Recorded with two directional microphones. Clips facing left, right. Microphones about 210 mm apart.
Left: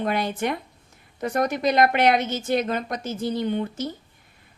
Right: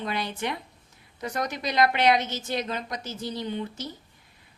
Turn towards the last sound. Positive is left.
turn(degrees=55)  # may be behind; listen again after turning